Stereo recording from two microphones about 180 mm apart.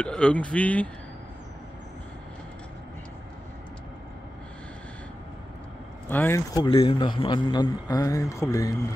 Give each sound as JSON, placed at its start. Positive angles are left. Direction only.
{"t": 0.0, "sound": "speech", "side_deg": 5}
{"t": 6.0, "sound": "a man's voice", "side_deg": 10}